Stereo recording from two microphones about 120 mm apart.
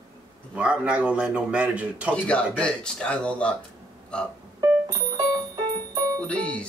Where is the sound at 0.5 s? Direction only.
10° right (ahead or behind).